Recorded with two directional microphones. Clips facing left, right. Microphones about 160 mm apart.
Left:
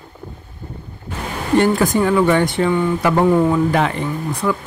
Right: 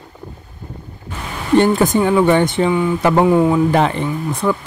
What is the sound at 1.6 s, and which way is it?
Speech, 20° right (ahead or behind).